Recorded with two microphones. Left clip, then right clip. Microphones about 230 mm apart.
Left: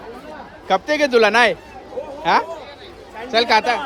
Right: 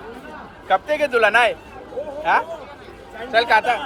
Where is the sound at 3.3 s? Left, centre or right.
Left.